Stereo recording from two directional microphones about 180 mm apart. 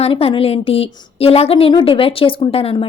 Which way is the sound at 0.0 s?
35° left (ahead or behind).